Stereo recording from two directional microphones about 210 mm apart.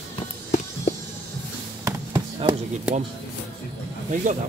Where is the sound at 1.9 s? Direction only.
15° right (ahead or behind).